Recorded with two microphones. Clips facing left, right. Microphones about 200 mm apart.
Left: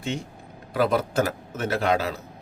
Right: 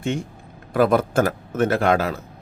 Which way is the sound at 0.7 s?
50° right (ahead or behind).